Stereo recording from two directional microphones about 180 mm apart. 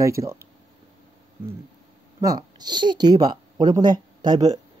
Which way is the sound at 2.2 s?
20° right (ahead or behind).